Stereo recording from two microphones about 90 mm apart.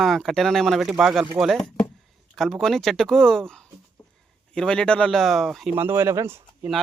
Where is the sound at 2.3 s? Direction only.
5° left (ahead or behind).